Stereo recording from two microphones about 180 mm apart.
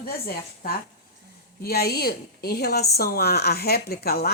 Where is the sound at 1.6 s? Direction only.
60° left (ahead or behind).